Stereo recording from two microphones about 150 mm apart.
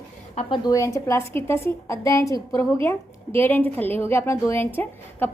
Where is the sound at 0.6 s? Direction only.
20° left (ahead or behind).